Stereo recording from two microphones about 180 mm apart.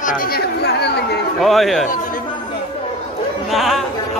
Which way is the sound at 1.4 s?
Centre (ahead or behind).